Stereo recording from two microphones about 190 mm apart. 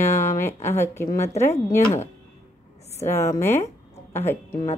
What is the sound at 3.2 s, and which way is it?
A woman's voice, 15° left (ahead or behind).